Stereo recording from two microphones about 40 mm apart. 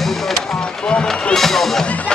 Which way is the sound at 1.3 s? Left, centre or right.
Centre.